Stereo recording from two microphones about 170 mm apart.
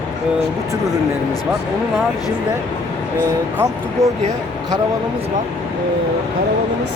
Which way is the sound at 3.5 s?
20° right (ahead or behind).